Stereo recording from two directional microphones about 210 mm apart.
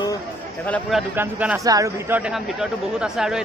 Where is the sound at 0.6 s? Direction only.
5° left (ahead or behind).